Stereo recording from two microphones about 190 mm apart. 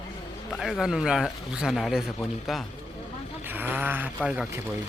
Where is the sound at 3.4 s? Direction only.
10° right (ahead or behind).